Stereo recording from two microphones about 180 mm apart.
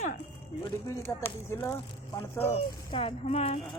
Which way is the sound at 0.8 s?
15° left (ahead or behind).